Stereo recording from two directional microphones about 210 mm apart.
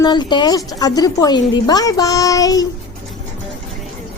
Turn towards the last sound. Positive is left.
turn(degrees=15)  # may be behind; listen again after turning